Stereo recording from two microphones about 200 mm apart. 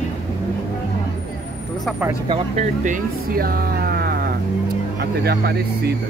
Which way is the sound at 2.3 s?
35° right (ahead or behind).